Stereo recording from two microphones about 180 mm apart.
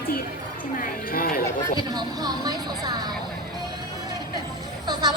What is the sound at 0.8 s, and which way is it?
Speech, 50° left (ahead or behind).